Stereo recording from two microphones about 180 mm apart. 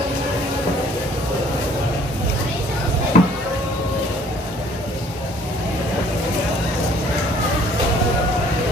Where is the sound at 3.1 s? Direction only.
45° left (ahead or behind).